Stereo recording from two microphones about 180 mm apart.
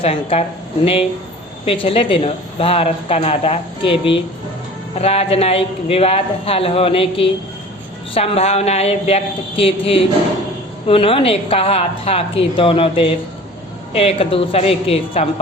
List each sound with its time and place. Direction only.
0.0 s speech: 35° left (ahead or behind)
1.6 s speech: 30° left (ahead or behind)